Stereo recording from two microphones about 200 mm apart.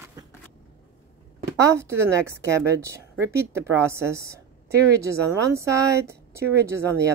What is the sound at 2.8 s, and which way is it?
A woman's voice, 15° right (ahead or behind).